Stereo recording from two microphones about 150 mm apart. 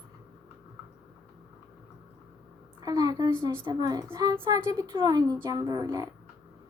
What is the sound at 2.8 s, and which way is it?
A woman's voice, 25° right (ahead or behind).